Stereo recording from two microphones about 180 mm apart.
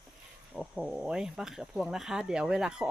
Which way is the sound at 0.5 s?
5° right (ahead or behind).